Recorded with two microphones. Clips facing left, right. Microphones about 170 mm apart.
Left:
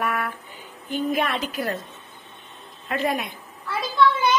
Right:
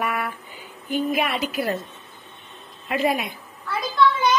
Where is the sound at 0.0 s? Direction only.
Centre (ahead or behind).